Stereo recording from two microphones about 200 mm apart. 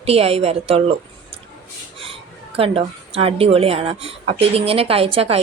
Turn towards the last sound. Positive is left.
turn(degrees=-30)  # may be behind; listen again after turning